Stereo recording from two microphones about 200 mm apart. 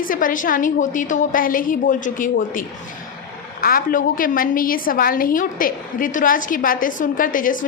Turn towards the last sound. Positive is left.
turn(degrees=45)  # may be behind; listen again after turning